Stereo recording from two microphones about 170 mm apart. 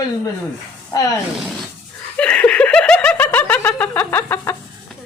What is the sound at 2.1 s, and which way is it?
Snicker, 5° left (ahead or behind).